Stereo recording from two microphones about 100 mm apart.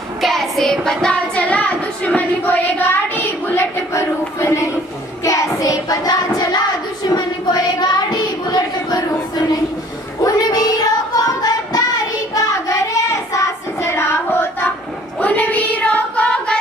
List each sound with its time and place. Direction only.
0.2 s child singing: centre (ahead or behind); by 6.6 s 40° left (ahead or behind)
7.1 s a sound: 40° left (ahead or behind)
10.2 s child singing: 40° left (ahead or behind); by 16.5 s 10° left (ahead or behind)